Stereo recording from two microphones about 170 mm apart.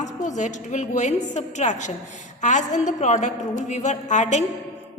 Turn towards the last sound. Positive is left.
turn(degrees=45)  # may be behind; listen again after turning